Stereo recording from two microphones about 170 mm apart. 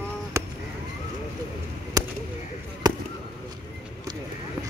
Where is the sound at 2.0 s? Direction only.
20° right (ahead or behind).